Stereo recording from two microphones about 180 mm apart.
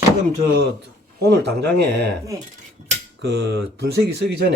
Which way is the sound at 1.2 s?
65° right (ahead or behind).